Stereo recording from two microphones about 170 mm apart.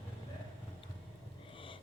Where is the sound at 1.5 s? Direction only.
30° left (ahead or behind).